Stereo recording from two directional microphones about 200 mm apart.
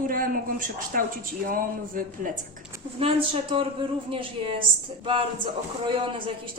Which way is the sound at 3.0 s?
25° right (ahead or behind).